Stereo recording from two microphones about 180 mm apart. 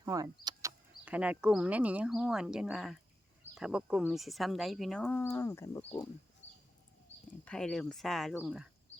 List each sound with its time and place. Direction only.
0.0 s power windows: 20° right (ahead or behind)
1.0 s speech: 5° right (ahead or behind); by 6.1 s 20° left (ahead or behind)
7.4 s speech: 5° left (ahead or behind)